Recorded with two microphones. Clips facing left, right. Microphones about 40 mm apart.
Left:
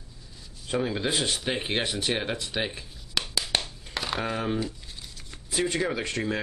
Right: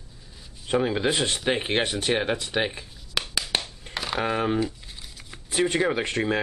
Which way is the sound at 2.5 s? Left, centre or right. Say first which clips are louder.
Right 4 dB; centre.